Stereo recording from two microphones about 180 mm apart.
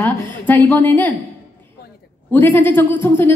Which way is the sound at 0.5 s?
10° left (ahead or behind).